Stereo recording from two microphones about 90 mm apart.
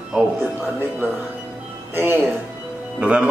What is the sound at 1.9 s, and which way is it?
Speech, 20° right (ahead or behind).